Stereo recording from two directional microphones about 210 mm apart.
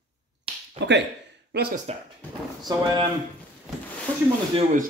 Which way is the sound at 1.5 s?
50° right (ahead or behind).